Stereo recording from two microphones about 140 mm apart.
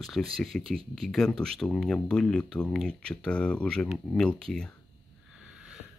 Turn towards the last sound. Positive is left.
turn(degrees=5)  # may be behind; listen again after turning